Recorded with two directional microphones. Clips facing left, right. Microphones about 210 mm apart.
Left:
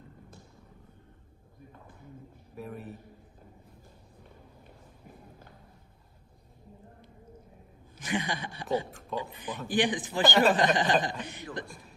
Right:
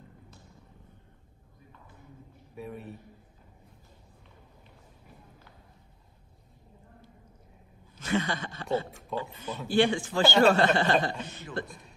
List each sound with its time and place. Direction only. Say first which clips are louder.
2.5 s a man's voice: even; centre (ahead or behind)
8.0 s speech: right 3 dB; 15° left (ahead or behind)